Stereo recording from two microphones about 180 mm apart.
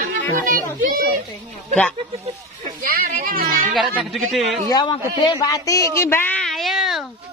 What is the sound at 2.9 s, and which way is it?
Children playing, 55° right (ahead or behind).